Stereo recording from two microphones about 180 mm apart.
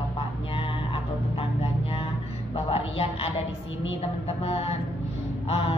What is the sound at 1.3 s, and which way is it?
Music, 35° left (ahead or behind).